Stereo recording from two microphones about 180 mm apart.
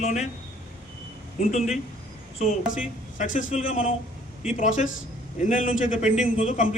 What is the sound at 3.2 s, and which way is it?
A man's voice, 45° left (ahead or behind).